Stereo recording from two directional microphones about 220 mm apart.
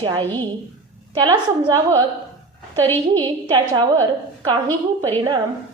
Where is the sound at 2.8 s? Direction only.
10° left (ahead or behind).